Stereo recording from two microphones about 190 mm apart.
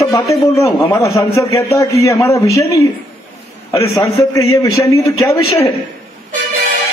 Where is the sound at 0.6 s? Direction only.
15° left (ahead or behind).